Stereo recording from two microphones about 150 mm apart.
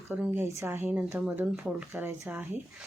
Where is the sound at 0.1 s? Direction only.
15° right (ahead or behind).